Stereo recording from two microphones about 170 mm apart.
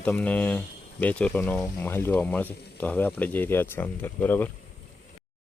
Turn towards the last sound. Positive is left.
turn(degrees=10)  # may be behind; listen again after turning